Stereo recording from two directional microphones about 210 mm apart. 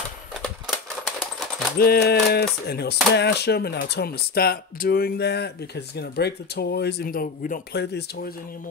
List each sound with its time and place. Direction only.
0.4 s typewriter: centre (ahead or behind)
1.8 s speech: 50° left (ahead or behind)